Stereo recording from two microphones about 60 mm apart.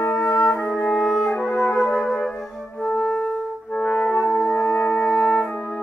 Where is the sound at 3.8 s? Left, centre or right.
Left.